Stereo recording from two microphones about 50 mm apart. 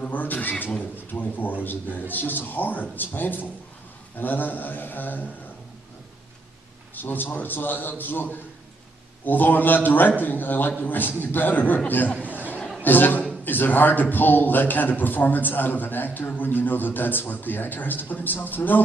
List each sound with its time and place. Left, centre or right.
0.1 s a sound: left
1.1 s a man's voice: left
7.0 s a man's voice: left
11.9 s chatter: left
12.8 s a man's voice: left